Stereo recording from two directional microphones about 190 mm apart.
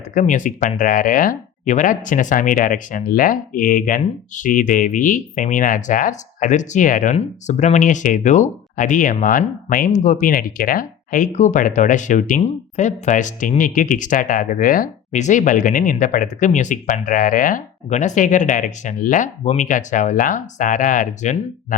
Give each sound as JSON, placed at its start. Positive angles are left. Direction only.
{"t": 0.1, "sound": "speech", "side_deg": 40}
{"t": 0.8, "sound": "speech", "side_deg": 50}